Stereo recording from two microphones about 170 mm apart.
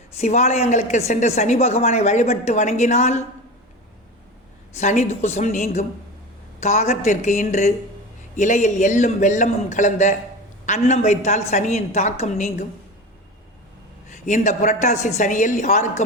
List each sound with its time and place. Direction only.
0.2 s a woman's voice: 40° left (ahead or behind)
4.8 s a woman's voice: 45° left (ahead or behind)
14.1 s a woman's voice: 45° left (ahead or behind)